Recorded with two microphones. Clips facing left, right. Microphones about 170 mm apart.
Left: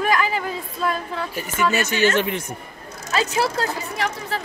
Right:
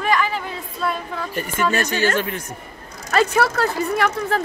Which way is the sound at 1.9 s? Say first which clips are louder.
Left 1 dB; 20° left (ahead or behind).